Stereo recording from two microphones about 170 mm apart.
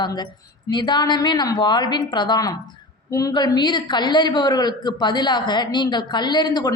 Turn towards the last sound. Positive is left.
turn(degrees=25)  # may be behind; listen again after turning